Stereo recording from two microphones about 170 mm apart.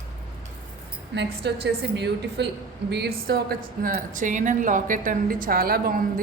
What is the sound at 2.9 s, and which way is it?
Speech, 70° right (ahead or behind).